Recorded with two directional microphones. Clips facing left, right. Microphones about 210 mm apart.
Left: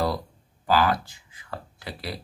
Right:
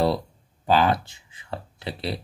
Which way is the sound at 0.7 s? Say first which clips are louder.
Right 2 dB; 25° right (ahead or behind).